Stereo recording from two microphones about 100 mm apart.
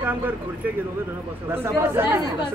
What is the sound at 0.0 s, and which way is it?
Speech, 20° right (ahead or behind).